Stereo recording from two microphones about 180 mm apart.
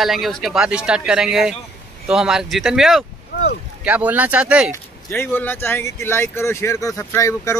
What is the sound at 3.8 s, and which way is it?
Speech, 10° right (ahead or behind).